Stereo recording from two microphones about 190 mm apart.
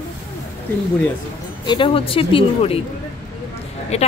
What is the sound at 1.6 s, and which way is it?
Speech, 25° left (ahead or behind).